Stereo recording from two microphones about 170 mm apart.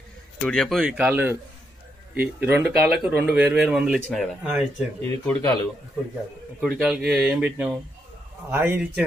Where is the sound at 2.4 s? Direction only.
10° right (ahead or behind).